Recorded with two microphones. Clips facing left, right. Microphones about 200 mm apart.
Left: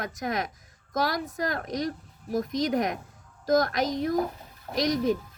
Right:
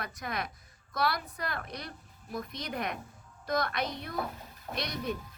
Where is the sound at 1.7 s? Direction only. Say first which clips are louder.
Left 13 dB; 90° left.